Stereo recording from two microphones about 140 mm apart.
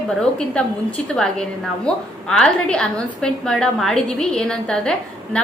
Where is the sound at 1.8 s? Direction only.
5° left (ahead or behind).